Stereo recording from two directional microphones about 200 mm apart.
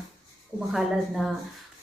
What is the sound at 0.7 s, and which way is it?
Speech, centre (ahead or behind).